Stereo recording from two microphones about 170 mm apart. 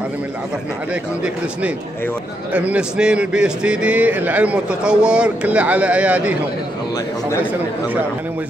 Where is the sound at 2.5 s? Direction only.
10° right (ahead or behind).